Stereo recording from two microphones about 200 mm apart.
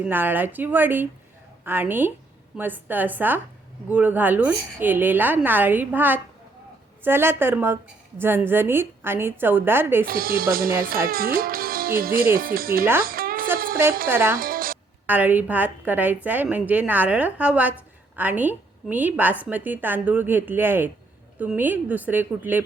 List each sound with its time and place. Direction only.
0.0 s a woman's voice: 10° right (ahead or behind)
10.1 s speech: 45° right (ahead or behind)
12.8 s a woman's voice: 10° right (ahead or behind)
13.1 s music: 45° right (ahead or behind)
14.1 s a woman's voice: 10° right (ahead or behind)
14.3 s music: 45° right (ahead or behind)
15.0 s a woman's voice: 10° right (ahead or behind)